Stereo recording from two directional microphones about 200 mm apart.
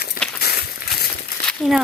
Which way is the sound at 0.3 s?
55° left (ahead or behind).